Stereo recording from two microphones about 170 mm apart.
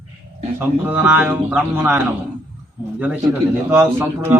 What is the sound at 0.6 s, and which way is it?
Speech, 10° right (ahead or behind).